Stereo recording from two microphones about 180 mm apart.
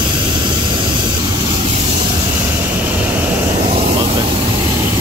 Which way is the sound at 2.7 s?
10° right (ahead or behind).